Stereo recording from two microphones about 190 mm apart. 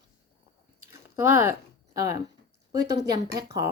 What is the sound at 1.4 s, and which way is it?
A woman's voice, 15° right (ahead or behind).